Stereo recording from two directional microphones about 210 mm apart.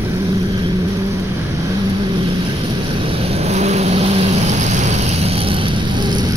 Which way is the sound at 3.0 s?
25° right (ahead or behind).